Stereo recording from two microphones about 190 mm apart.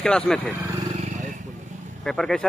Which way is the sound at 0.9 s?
40° right (ahead or behind).